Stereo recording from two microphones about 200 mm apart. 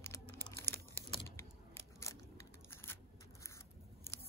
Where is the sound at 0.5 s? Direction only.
10° left (ahead or behind).